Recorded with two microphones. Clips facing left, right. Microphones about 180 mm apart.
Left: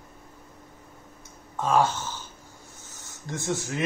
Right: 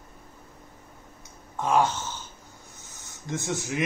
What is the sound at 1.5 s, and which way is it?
A man's voice, 15° right (ahead or behind).